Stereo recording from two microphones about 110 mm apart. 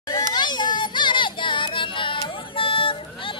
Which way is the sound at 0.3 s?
40° left (ahead or behind).